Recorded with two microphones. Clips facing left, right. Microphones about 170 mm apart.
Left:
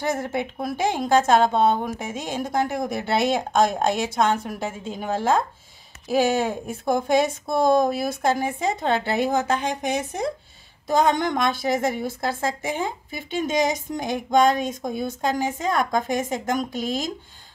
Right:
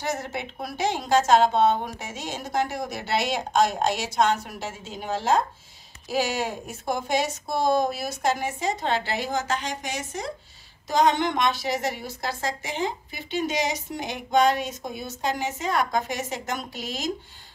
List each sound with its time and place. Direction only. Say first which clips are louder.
0.0 s a woman's voice: left 5 dB; 55° left (ahead or behind)